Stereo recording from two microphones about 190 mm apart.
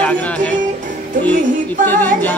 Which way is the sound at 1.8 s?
10° left (ahead or behind).